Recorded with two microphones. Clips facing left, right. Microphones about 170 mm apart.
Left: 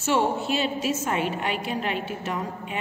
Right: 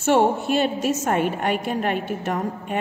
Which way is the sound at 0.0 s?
55° right (ahead or behind).